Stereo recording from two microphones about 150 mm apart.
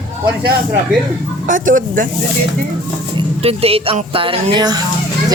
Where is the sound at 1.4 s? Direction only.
60° right (ahead or behind).